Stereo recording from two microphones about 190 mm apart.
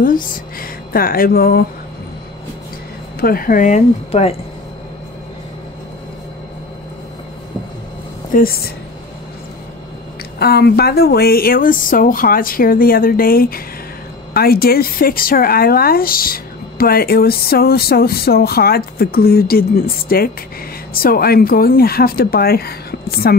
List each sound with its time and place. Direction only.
0.0 s speech: 45° left (ahead or behind)
3.2 s speech: 50° left (ahead or behind); by 4.4 s 35° left (ahead or behind)
8.3 s speech: 50° left (ahead or behind)
10.4 s speech: 55° left (ahead or behind)